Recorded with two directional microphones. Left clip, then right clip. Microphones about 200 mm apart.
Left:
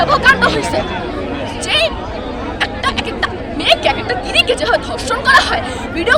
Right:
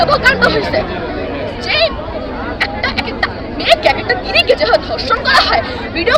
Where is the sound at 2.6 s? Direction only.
15° left (ahead or behind).